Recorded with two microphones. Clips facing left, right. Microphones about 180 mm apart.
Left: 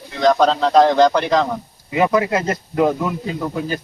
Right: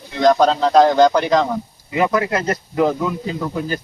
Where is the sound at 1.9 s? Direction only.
20° left (ahead or behind).